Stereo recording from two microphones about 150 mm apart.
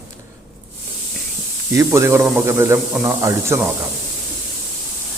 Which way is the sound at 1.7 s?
20° right (ahead or behind).